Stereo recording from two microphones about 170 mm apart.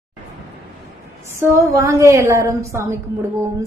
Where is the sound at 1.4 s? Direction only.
15° right (ahead or behind).